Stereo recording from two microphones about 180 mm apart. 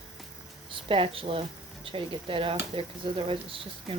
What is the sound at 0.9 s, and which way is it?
Speech, 30° right (ahead or behind).